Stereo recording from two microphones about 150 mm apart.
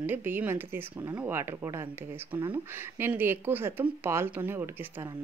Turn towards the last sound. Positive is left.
turn(degrees=-15)  # may be behind; listen again after turning